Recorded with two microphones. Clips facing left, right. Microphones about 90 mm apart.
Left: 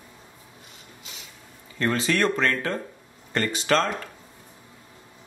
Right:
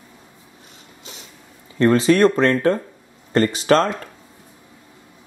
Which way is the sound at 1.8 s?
35° right (ahead or behind).